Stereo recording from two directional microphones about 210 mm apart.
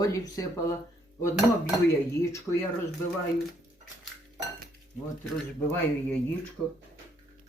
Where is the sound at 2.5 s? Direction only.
5° left (ahead or behind).